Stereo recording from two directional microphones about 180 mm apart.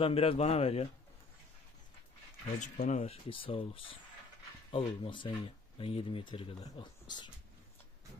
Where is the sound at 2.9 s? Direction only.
40° left (ahead or behind).